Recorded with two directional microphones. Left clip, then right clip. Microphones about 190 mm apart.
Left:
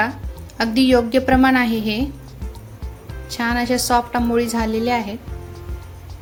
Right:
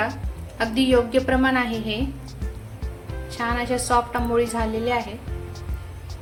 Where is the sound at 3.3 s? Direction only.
55° left (ahead or behind).